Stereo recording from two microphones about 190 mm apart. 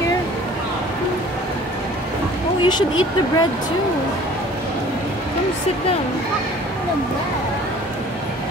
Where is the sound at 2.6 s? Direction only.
20° left (ahead or behind).